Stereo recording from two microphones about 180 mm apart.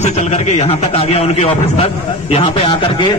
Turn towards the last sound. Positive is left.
turn(degrees=30)  # may be behind; listen again after turning